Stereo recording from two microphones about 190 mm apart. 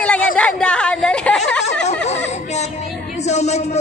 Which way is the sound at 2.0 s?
35° left (ahead or behind).